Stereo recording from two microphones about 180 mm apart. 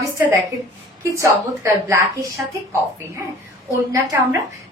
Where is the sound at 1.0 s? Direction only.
15° right (ahead or behind).